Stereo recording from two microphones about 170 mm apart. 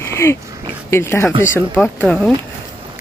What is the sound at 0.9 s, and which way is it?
Speech, 15° left (ahead or behind).